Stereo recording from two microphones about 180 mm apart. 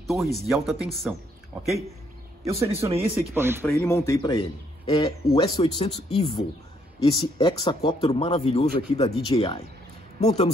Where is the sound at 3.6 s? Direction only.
15° left (ahead or behind).